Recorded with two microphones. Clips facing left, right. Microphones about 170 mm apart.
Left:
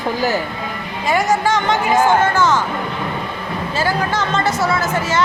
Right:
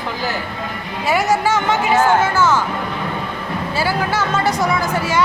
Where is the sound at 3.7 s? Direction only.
10° right (ahead or behind).